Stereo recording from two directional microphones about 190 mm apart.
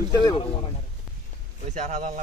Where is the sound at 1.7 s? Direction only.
40° right (ahead or behind).